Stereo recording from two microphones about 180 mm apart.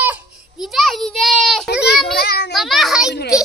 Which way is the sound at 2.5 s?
Centre (ahead or behind).